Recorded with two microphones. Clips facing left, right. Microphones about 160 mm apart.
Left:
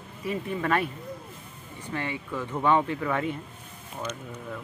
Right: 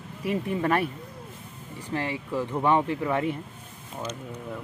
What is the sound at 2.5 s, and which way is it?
Speech, 5° right (ahead or behind).